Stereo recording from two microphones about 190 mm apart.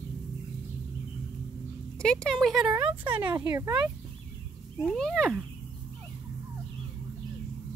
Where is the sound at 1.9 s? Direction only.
5° left (ahead or behind).